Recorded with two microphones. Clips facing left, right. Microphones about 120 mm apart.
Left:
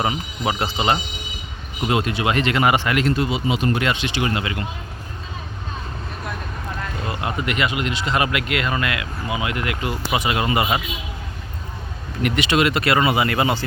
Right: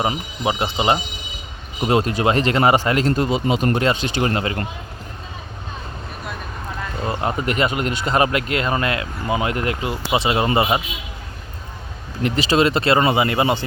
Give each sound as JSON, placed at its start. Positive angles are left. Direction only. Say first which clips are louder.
{"t": 0.4, "sound": "speech", "louder": "right 2 dB", "side_deg": -25}
{"t": 1.8, "sound": "speech", "louder": "right 3 dB", "side_deg": -35}
{"t": 7.0, "sound": "speech", "louder": "right 4 dB", "side_deg": -35}
{"t": 9.8, "sound": "speech", "louder": "right 1 dB", "side_deg": -25}
{"t": 12.2, "sound": "speech", "louder": "right 2 dB", "side_deg": -30}